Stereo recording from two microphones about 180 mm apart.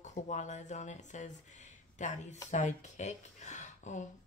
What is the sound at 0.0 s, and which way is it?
Speech, 40° left (ahead or behind).